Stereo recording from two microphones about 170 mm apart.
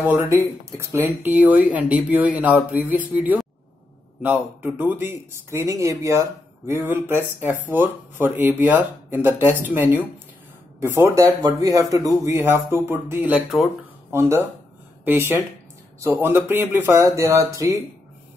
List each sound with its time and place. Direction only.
0.0 s speech: 15° right (ahead or behind)